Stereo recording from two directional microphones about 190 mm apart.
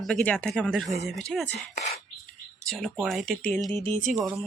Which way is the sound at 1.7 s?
40° left (ahead or behind).